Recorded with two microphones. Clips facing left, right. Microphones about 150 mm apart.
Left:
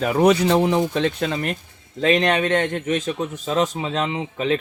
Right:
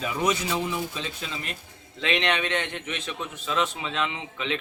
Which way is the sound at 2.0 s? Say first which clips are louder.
Left 8 dB; 45° left (ahead or behind).